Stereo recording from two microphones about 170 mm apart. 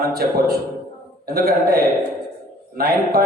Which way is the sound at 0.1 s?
65° right (ahead or behind).